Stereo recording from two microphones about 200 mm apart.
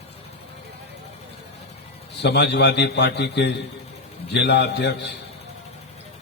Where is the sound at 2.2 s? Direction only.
55° left (ahead or behind).